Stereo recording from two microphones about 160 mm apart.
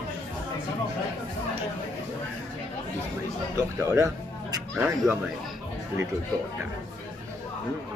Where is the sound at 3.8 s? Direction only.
20° right (ahead or behind).